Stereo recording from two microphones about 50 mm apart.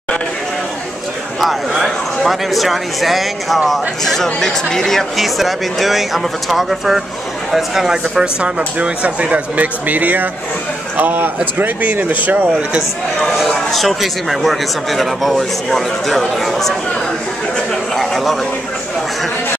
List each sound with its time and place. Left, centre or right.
1.4 s speech: centre
8.1 s a man's voice: centre; by 12.5 s right
13.7 s speech: centre
17.9 s a sound: centre